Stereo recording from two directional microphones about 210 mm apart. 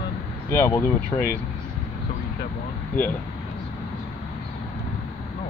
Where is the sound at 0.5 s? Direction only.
15° left (ahead or behind).